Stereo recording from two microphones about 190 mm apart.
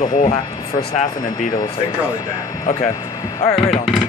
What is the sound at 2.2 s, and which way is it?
Speech, 15° left (ahead or behind).